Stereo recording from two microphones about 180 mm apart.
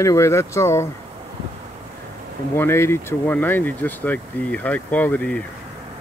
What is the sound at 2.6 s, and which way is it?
Speech, 15° left (ahead or behind).